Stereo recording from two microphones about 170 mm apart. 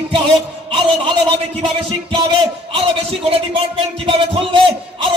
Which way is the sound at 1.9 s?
30° right (ahead or behind).